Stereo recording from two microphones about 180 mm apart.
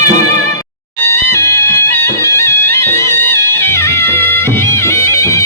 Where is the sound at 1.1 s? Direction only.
15° left (ahead or behind).